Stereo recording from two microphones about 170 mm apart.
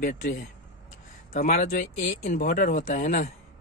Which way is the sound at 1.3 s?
45° left (ahead or behind).